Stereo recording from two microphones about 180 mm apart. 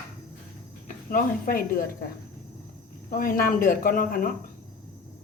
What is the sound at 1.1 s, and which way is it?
Speech, 50° left (ahead or behind).